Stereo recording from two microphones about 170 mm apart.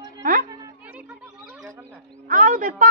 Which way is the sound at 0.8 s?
10° right (ahead or behind).